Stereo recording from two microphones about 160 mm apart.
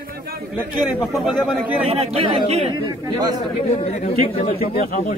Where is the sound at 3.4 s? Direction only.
35° left (ahead or behind).